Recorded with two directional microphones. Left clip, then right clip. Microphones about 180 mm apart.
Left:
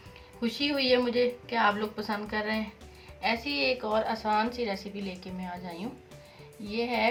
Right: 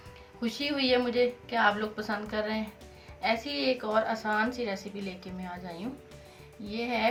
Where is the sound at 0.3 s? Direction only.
15° left (ahead or behind).